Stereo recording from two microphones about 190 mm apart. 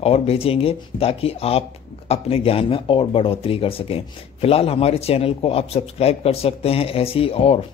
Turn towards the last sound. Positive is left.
turn(degrees=30)  # may be behind; listen again after turning